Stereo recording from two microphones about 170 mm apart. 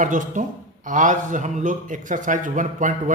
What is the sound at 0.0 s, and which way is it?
A man's voice, 50° right (ahead or behind).